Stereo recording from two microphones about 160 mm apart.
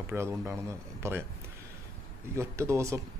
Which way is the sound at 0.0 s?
15° right (ahead or behind).